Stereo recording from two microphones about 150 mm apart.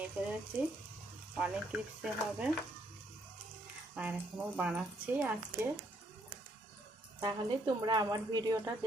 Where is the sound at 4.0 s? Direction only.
10° right (ahead or behind).